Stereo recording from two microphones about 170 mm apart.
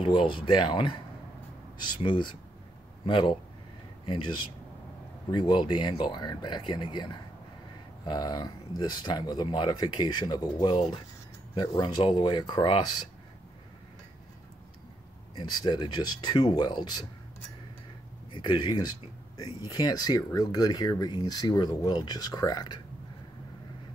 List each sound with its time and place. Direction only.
0.0 s speech: 30° left (ahead or behind)
15.3 s speech: 25° left (ahead or behind)
18.3 s speech: 30° left (ahead or behind)